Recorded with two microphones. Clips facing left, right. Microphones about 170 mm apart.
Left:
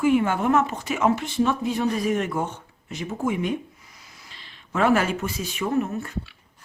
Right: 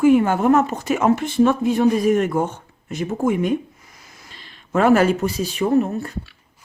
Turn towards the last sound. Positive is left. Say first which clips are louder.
# right 6 dB
turn(degrees=-35)  # may be behind; listen again after turning